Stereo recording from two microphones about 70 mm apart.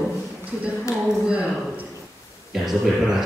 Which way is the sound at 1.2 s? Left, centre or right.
Right.